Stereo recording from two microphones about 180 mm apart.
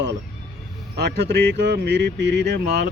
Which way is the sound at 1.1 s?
65° right (ahead or behind).